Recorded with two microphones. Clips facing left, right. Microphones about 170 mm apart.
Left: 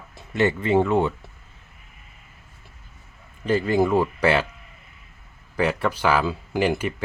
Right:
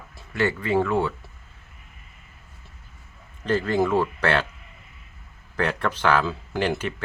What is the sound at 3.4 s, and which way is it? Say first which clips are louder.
Speech: left 2 dB; 10° left (ahead or behind).